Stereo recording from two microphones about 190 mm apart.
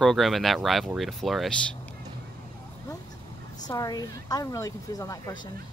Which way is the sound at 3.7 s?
20° left (ahead or behind).